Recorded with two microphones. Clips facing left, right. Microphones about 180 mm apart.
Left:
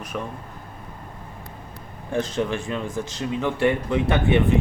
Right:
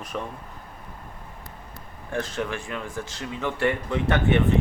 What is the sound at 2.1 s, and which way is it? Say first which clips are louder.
Speech: left 4 dB; 20° left (ahead or behind).